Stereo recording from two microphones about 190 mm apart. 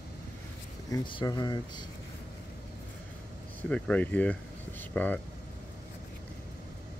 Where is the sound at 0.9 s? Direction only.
25° left (ahead or behind).